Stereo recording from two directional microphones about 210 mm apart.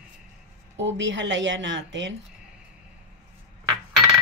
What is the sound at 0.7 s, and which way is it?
A woman's voice, 60° right (ahead or behind).